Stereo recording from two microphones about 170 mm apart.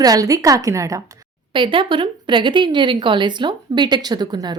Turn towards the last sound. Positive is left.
turn(degrees=-25)  # may be behind; listen again after turning